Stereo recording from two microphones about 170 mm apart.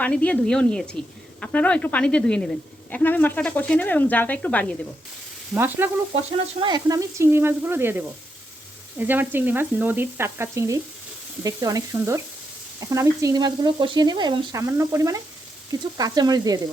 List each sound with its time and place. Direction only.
0.0 s a woman's voice: 10° left (ahead or behind)
5.5 s sizzle: 10° right (ahead or behind)
6.6 s sizzle: 25° right (ahead or behind)
12.8 s frying: 20° right (ahead or behind)